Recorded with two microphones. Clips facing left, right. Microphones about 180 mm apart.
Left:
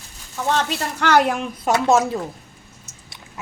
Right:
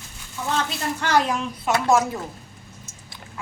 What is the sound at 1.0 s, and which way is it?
Speech, 65° left (ahead or behind).